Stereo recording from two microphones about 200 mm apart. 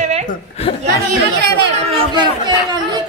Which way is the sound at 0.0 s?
35° right (ahead or behind).